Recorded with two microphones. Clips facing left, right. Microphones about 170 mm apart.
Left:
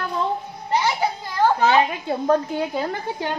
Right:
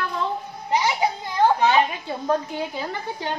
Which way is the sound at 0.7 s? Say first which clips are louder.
Even; 15° right (ahead or behind).